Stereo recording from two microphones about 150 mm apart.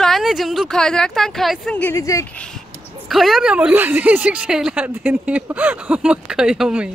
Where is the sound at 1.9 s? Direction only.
20° left (ahead or behind).